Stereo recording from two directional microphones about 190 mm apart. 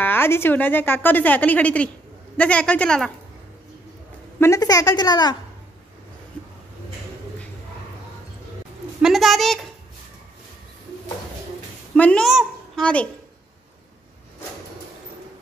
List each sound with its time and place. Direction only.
0.0 s speech: 10° left (ahead or behind)
4.4 s a woman's voice: 15° left (ahead or behind)
6.4 s a sound: 5° left (ahead or behind)
9.0 s a woman's voice: centre (ahead or behind)
11.9 s a woman's voice: 5° left (ahead or behind)